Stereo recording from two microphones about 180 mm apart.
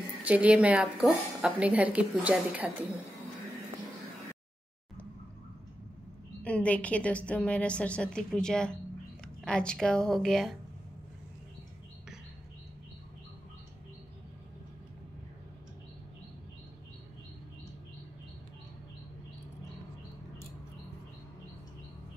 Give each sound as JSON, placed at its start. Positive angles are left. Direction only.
{"t": 0.2, "sound": "a woman's voice", "side_deg": -10}
{"t": 6.4, "sound": "a woman's voice", "side_deg": 5}